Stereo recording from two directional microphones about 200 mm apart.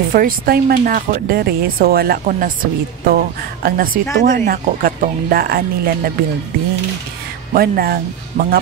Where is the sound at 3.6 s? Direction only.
45° right (ahead or behind).